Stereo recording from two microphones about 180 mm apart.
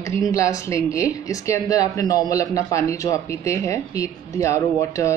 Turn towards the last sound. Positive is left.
turn(degrees=15)  # may be behind; listen again after turning